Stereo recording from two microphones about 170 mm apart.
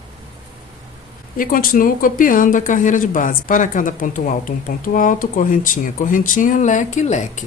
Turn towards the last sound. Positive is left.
turn(degrees=45)  # may be behind; listen again after turning